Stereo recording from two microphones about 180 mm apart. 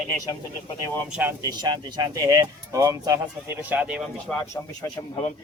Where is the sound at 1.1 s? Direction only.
10° right (ahead or behind).